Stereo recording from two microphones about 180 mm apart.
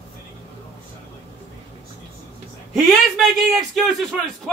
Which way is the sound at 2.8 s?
Centre (ahead or behind).